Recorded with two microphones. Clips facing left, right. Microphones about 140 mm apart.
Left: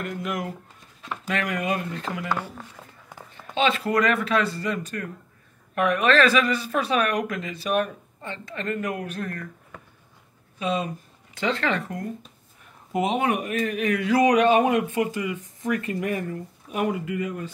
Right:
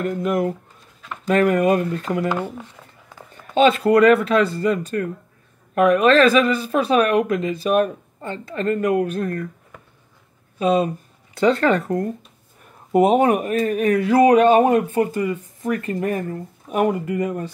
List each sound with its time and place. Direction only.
0.0 s a woman's voice: 40° right (ahead or behind)
3.5 s a woman's voice: 40° right (ahead or behind)
10.6 s a woman's voice: 35° right (ahead or behind)
12.9 s a woman's voice: 45° right (ahead or behind)